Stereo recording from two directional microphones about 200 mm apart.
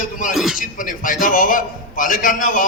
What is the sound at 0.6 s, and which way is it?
A man's voice, 40° left (ahead or behind).